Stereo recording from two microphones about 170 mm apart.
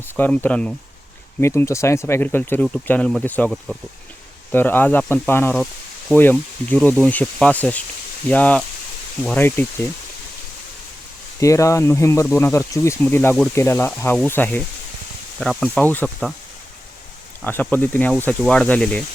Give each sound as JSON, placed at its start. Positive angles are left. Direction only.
{"t": 0.2, "sound": "speech", "side_deg": 10}
{"t": 11.3, "sound": "speech", "side_deg": 20}
{"t": 17.4, "sound": "speech", "side_deg": 10}